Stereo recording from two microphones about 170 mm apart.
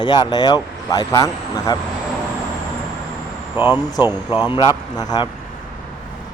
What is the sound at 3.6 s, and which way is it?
Speech, 10° right (ahead or behind).